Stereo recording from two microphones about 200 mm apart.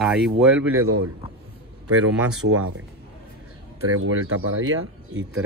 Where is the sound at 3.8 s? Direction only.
90° right.